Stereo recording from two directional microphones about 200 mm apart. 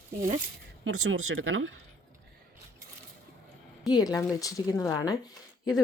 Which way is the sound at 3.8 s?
20° left (ahead or behind).